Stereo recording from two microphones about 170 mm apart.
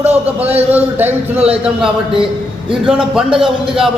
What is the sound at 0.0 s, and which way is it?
Speech, 40° right (ahead or behind).